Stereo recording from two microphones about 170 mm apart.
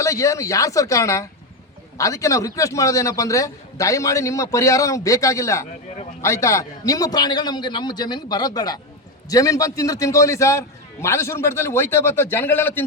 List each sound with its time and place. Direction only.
0.0 s a man's voice: 20° left (ahead or behind)